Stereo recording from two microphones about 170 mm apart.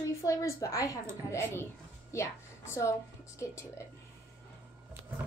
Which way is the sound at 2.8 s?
15° left (ahead or behind).